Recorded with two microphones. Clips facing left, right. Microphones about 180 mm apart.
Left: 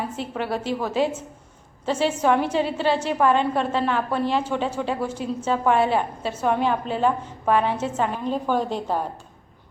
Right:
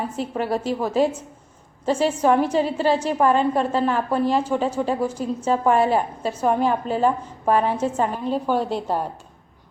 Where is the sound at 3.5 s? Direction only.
5° right (ahead or behind).